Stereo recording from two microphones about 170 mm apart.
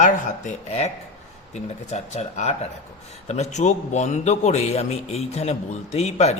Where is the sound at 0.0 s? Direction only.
45° left (ahead or behind).